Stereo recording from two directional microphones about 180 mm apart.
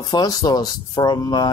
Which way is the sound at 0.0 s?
20° left (ahead or behind).